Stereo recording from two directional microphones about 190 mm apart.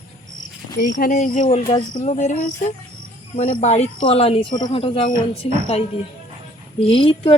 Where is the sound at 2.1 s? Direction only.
40° left (ahead or behind).